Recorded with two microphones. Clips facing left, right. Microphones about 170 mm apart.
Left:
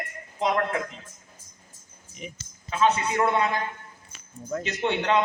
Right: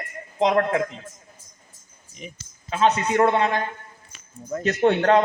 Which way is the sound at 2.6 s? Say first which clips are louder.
Right 3 dB; 35° right (ahead or behind).